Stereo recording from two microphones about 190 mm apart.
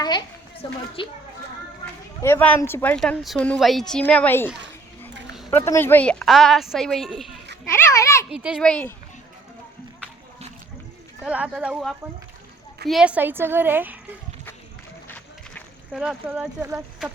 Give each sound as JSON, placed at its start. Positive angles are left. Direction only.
{"t": 0.0, "sound": "speech", "side_deg": 20}
{"t": 2.2, "sound": "a woman's voice", "side_deg": 15}
{"t": 5.5, "sound": "a woman's voice", "side_deg": 15}
{"t": 7.9, "sound": "a sound", "side_deg": 15}
{"t": 8.3, "sound": "a woman's voice", "side_deg": -5}
{"t": 11.2, "sound": "a woman's voice", "side_deg": -5}
{"t": 15.0, "sound": "run", "side_deg": 10}
{"t": 15.9, "sound": "a woman's voice", "side_deg": -5}